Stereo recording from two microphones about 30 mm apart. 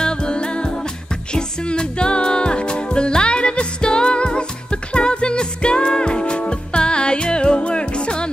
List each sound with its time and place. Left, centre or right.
0.0 s music: left